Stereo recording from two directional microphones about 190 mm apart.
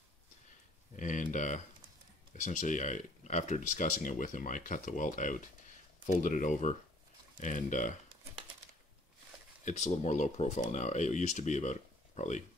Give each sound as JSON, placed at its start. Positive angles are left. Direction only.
{"t": 0.9, "sound": "a sound", "side_deg": 40}
{"t": 2.3, "sound": "speech", "side_deg": 40}
{"t": 9.7, "sound": "speech", "side_deg": 40}